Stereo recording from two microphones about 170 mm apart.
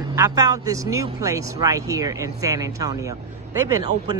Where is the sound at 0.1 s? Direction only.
20° right (ahead or behind).